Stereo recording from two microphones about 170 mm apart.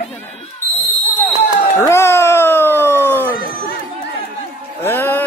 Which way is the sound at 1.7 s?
15° left (ahead or behind).